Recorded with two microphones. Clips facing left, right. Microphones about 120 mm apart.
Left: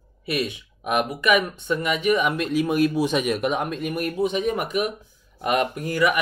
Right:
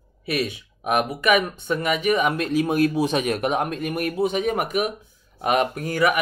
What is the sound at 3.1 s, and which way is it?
Speech, 45° right (ahead or behind).